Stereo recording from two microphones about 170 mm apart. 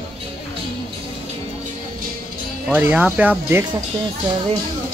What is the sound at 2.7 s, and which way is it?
Speech, 10° right (ahead or behind).